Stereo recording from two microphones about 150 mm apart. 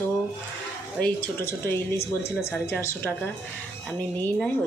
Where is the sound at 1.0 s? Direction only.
15° left (ahead or behind).